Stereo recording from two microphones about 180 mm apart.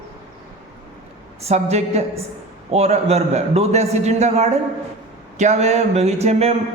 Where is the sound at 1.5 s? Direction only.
35° right (ahead or behind).